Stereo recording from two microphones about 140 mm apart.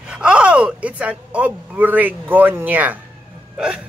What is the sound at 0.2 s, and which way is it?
A man's voice, 5° right (ahead or behind).